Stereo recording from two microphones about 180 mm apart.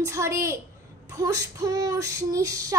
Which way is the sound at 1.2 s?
20° right (ahead or behind).